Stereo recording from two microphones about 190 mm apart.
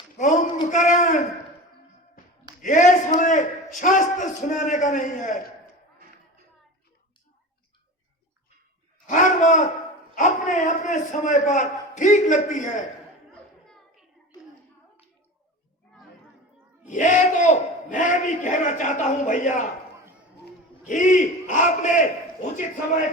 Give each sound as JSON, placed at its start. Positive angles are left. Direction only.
{"t": 0.7, "sound": "a man's voice", "side_deg": 40}
{"t": 2.6, "sound": "a man's voice", "side_deg": 40}
{"t": 9.0, "sound": "a sound", "side_deg": 40}
{"t": 10.2, "sound": "a man's voice", "side_deg": 40}
{"t": 16.9, "sound": "a man's voice", "side_deg": 40}
{"t": 20.8, "sound": "a man's voice", "side_deg": 40}